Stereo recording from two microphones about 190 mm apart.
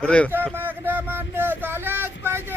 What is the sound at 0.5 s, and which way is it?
Speech, 10° right (ahead or behind).